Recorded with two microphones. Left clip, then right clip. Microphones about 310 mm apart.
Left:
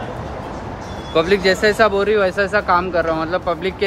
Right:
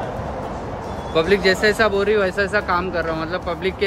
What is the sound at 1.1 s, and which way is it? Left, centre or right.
Speech, centre.